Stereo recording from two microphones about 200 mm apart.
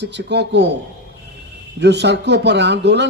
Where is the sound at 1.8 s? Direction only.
60° right (ahead or behind).